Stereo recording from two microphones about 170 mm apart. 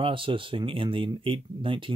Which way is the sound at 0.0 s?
30° right (ahead or behind).